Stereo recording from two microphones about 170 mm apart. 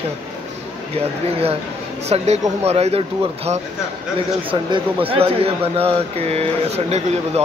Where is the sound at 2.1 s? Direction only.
40° right (ahead or behind).